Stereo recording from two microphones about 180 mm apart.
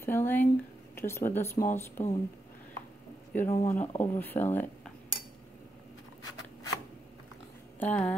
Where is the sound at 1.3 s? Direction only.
15° left (ahead or behind).